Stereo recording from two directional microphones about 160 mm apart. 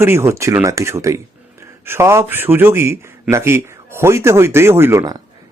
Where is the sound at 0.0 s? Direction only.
15° right (ahead or behind).